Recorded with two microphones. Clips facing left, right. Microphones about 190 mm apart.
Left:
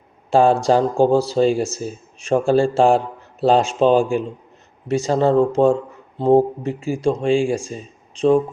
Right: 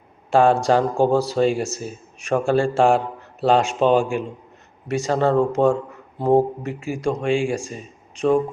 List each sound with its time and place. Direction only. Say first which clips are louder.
0.3 s speech: left 1 dB; 30° left (ahead or behind)